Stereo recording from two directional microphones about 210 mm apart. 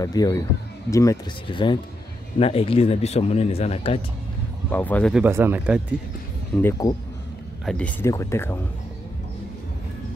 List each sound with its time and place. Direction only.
0.0 s speech: 15° left (ahead or behind)
4.6 s speech: 10° left (ahead or behind)
5.1 s speech: 10° right (ahead or behind)
6.5 s speech: 15° left (ahead or behind)